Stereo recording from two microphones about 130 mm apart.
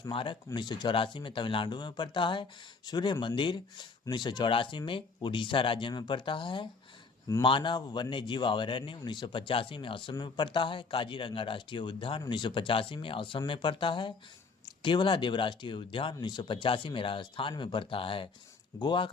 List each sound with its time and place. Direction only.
0.1 s a man's voice: 40° left (ahead or behind)